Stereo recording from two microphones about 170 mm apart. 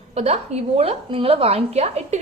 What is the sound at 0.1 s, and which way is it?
A woman's voice, 40° right (ahead or behind).